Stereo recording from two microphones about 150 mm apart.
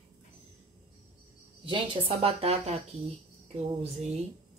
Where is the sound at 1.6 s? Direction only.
35° right (ahead or behind).